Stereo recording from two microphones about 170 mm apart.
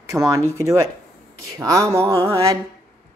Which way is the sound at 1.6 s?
20° right (ahead or behind).